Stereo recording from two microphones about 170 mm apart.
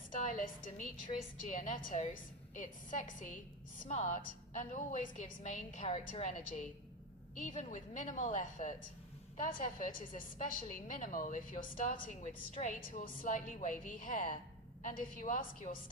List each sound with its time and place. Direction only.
0.1 s a woman's voice: 50° left (ahead or behind)